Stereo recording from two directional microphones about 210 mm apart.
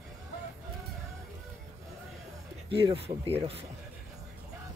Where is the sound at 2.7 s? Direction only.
25° right (ahead or behind).